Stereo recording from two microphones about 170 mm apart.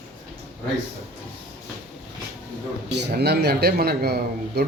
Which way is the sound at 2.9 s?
85° right.